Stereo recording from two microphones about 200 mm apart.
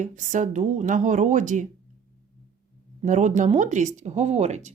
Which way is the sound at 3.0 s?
35° right (ahead or behind).